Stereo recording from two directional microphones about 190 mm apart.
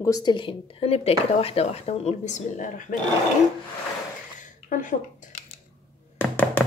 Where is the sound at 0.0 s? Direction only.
20° left (ahead or behind); by 2.9 s 45° left (ahead or behind).